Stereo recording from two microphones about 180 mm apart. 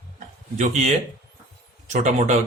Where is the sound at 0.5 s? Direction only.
40° right (ahead or behind).